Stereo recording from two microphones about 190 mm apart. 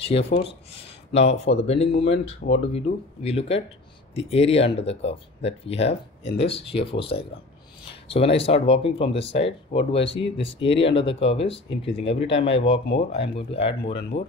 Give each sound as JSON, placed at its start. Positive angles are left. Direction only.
{"t": 0.0, "sound": "speech", "side_deg": 30}
{"t": 14.1, "sound": "speech", "side_deg": 70}